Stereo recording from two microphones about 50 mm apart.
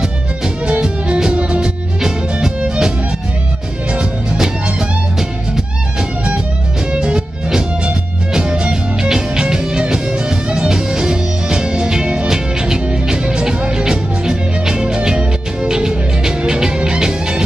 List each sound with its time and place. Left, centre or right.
0.7 s music: centre
6.9 s music: centre